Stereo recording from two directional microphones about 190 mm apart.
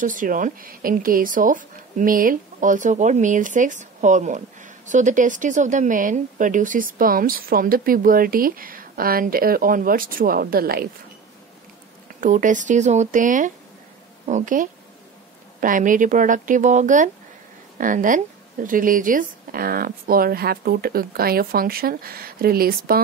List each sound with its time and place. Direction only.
0.0 s speech: 45° right (ahead or behind)
12.2 s speech: 40° right (ahead or behind)